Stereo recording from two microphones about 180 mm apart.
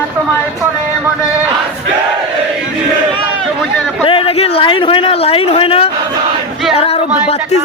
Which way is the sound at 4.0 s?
30° left (ahead or behind).